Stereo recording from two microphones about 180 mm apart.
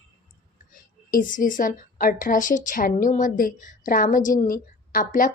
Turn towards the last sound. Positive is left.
turn(degrees=50)  # may be behind; listen again after turning